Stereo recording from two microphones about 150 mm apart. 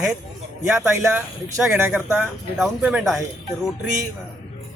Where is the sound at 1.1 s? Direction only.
5° right (ahead or behind).